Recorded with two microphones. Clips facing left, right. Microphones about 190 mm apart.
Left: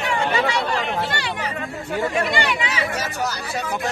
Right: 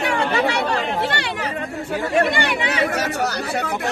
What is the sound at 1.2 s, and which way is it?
Speech, 55° right (ahead or behind).